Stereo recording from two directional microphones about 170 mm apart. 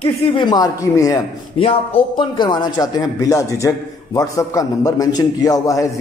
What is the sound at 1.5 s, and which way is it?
A man's voice, 35° left (ahead or behind).